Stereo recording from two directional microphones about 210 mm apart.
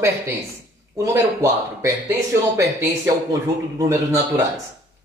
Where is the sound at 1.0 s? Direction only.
15° right (ahead or behind).